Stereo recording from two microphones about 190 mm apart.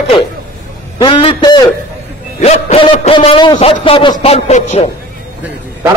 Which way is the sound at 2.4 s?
35° left (ahead or behind).